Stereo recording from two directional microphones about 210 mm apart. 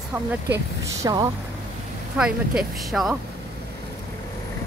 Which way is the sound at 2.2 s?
Centre (ahead or behind).